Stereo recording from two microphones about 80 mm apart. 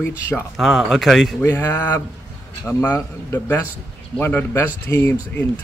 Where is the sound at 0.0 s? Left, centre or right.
Left.